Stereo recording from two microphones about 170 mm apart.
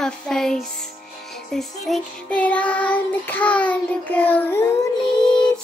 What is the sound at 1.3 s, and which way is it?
Music, centre (ahead or behind).